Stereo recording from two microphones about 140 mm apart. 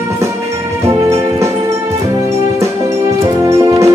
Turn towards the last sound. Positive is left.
turn(degrees=-20)  # may be behind; listen again after turning